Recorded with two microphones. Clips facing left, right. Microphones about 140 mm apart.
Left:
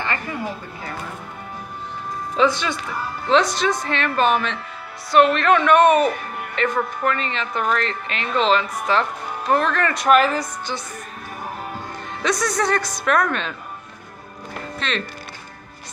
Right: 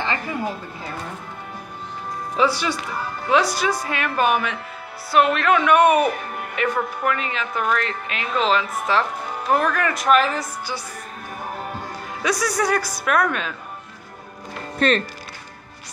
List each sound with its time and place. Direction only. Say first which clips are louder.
2.3 s a woman's voice: left 1 dB; 10° right (ahead or behind)
12.2 s speech: even; 5° right (ahead or behind)
14.8 s speech: right 8 dB; 45° right (ahead or behind)